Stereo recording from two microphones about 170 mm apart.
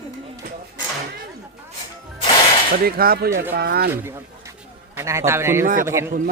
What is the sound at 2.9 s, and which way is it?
Speech, 60° right (ahead or behind).